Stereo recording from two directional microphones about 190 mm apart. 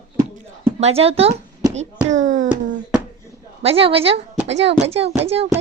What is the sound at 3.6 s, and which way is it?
Speech, 30° right (ahead or behind).